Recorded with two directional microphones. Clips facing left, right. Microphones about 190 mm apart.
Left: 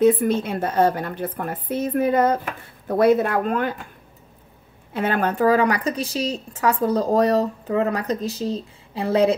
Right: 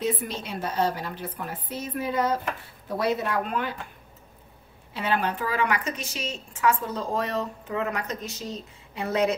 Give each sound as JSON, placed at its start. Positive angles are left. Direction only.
{"t": 0.0, "sound": "a woman's voice", "side_deg": 50}
{"t": 4.9, "sound": "a woman's voice", "side_deg": 50}